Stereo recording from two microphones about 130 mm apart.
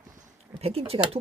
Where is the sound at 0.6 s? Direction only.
50° right (ahead or behind).